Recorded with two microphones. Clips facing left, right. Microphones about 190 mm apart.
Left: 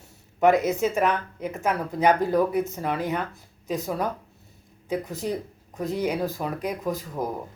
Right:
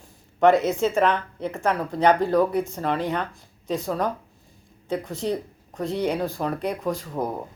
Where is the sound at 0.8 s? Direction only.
10° left (ahead or behind).